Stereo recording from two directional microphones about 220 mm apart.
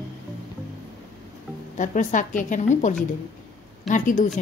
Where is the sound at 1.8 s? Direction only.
35° left (ahead or behind).